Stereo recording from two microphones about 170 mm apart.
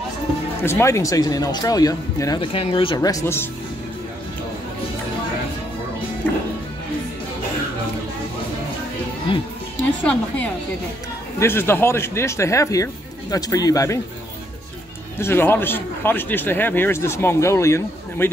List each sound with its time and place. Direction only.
0.6 s speech: 15° left (ahead or behind)
9.3 s music: 30° left (ahead or behind)
10.0 s a man's voice: 10° left (ahead or behind)
15.1 s a man's voice: 15° left (ahead or behind)